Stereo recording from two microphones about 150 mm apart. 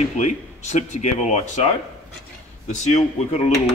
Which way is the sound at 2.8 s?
50° left (ahead or behind).